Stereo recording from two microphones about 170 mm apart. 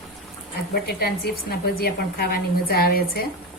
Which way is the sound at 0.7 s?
65° left (ahead or behind).